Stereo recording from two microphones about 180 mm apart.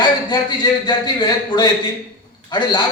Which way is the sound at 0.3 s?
25° left (ahead or behind).